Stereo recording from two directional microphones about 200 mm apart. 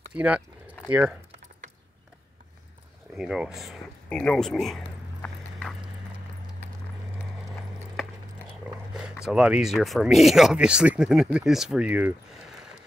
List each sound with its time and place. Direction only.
0.1 s speech: 5° right (ahead or behind)
3.2 s speech: centre (ahead or behind)
7.9 s a sound: 5° left (ahead or behind)
8.9 s speech: 5° right (ahead or behind)